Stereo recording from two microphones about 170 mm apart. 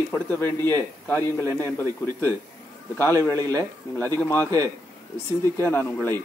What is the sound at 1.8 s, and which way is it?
Speech, 20° right (ahead or behind).